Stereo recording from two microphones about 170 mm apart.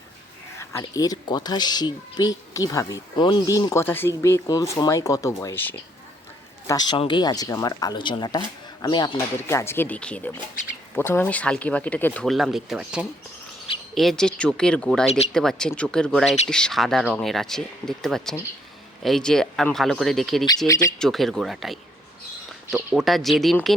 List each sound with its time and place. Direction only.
0.6 s a woman's voice: 15° left (ahead or behind)
6.7 s a woman's voice: 25° left (ahead or behind)
9.1 s speech: 15° left (ahead or behind)
20.7 s a woman's voice: 20° left (ahead or behind)
21.0 s speech: centre (ahead or behind)